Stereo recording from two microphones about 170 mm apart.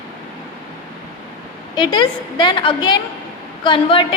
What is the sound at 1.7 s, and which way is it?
A woman's voice, 25° left (ahead or behind).